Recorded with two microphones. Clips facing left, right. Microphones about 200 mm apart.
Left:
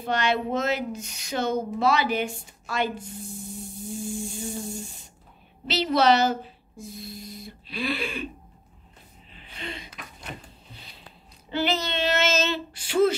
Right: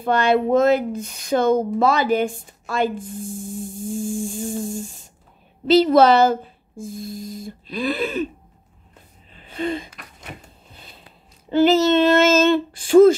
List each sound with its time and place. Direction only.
0.0 s speech: 55° right (ahead or behind)
9.3 s gasp: 45° right (ahead or behind)
10.7 s a sound: 50° right (ahead or behind)
11.5 s speech: 40° right (ahead or behind)